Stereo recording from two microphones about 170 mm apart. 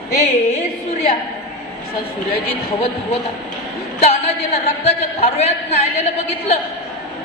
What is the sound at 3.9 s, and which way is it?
A man's voice, 40° left (ahead or behind).